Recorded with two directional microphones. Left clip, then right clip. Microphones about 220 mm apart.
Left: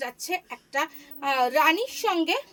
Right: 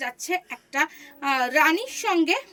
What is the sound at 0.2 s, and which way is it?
A woman's voice, 15° left (ahead or behind).